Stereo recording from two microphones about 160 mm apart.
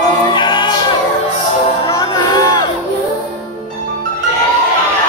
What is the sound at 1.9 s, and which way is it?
Music, 20° left (ahead or behind).